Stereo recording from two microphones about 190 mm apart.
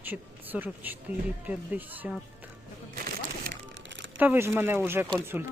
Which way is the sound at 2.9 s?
50° right (ahead or behind).